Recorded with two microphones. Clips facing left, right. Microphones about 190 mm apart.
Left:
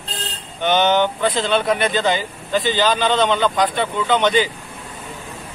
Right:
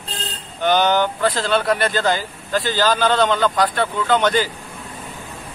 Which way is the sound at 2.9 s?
5° right (ahead or behind).